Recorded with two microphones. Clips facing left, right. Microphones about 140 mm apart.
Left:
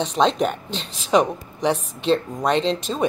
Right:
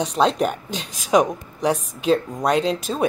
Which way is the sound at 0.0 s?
5° right (ahead or behind).